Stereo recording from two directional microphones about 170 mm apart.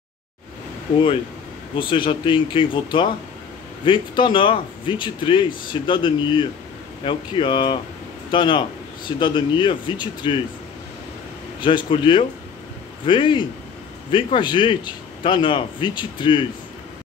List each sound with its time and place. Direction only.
1.8 s speech: 30° left (ahead or behind)
11.6 s speech: 30° left (ahead or behind)